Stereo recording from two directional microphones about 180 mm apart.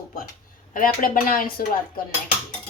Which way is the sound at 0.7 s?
50° left (ahead or behind).